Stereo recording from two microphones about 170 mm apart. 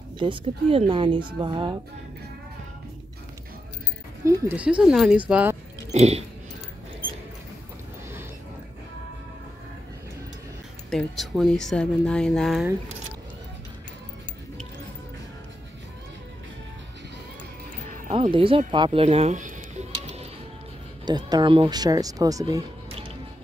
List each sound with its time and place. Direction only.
0.2 s speech: 30° right (ahead or behind)
4.2 s speech: 15° right (ahead or behind)
5.9 s a sound: 40° right (ahead or behind)
10.9 s speech: centre (ahead or behind)
18.1 s music: 30° right (ahead or behind)
21.0 s speech: 25° right (ahead or behind)